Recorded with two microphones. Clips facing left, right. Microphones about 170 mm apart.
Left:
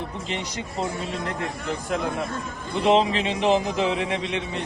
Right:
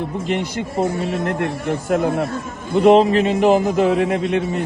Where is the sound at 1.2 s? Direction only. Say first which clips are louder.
Right 8 dB; 60° right (ahead or behind).